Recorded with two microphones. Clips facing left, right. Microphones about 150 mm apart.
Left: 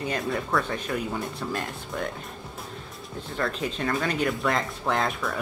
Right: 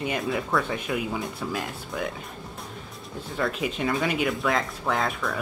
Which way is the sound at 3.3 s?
5° right (ahead or behind).